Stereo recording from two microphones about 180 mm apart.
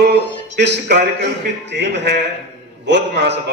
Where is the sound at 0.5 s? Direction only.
65° right (ahead or behind).